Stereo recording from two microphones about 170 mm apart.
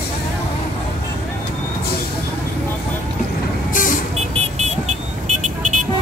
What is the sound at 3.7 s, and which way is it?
Vehicle, 50° left (ahead or behind).